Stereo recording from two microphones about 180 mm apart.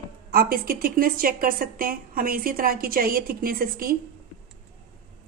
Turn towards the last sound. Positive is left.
turn(degrees=-55)  # may be behind; listen again after turning